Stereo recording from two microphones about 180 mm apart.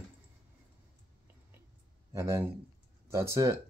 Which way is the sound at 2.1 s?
15° right (ahead or behind).